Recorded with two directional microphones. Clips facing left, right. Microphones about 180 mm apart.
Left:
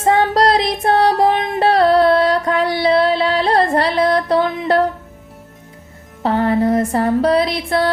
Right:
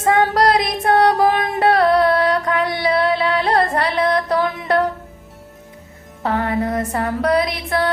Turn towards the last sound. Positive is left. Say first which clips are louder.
# left 3 dB
turn(degrees=30)  # may be behind; listen again after turning